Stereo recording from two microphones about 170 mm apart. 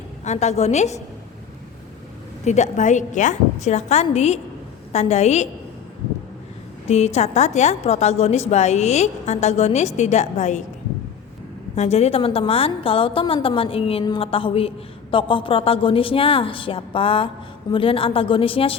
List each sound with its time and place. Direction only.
0.3 s a woman's voice: 40° left (ahead or behind)
2.4 s a woman's voice: 45° left (ahead or behind)
6.8 s a woman's voice: 40° left (ahead or behind)
11.7 s a woman's voice: 40° left (ahead or behind)